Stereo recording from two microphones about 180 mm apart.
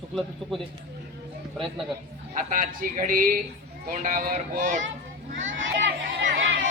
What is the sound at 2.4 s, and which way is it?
Speech, 50° right (ahead or behind).